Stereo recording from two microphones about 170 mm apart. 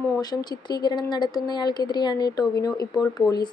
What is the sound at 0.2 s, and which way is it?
A woman's voice, 25° left (ahead or behind).